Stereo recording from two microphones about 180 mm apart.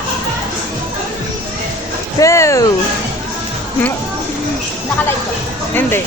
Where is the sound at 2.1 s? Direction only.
15° left (ahead or behind).